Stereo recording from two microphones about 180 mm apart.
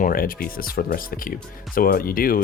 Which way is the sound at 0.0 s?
55° left (ahead or behind).